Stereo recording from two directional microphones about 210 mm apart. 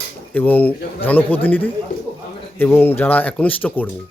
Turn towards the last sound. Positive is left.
turn(degrees=10)  # may be behind; listen again after turning